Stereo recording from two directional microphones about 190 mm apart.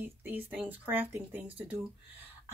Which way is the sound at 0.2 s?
10° right (ahead or behind).